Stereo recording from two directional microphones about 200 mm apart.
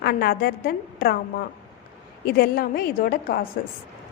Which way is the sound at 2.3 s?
50° left (ahead or behind).